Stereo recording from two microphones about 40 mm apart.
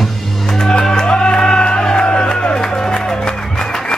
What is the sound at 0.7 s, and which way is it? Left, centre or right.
Music, centre.